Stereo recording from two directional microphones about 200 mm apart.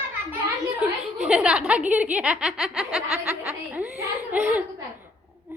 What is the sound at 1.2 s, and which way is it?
Speech, 5° right (ahead or behind).